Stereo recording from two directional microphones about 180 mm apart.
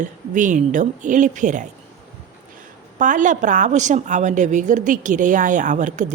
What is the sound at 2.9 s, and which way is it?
A woman's voice, 45° right (ahead or behind).